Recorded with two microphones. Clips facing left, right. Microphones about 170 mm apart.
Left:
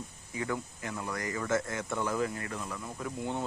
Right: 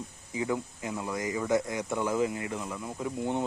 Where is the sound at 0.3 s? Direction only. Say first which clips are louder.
Right 4 dB; 15° right (ahead or behind).